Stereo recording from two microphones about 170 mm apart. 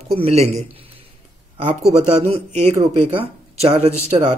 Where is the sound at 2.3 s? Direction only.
40° right (ahead or behind).